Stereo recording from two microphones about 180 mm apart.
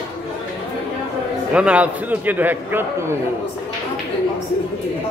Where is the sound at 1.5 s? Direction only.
5° right (ahead or behind).